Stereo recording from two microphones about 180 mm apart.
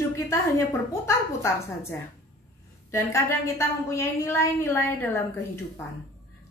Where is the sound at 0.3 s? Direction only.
15° left (ahead or behind).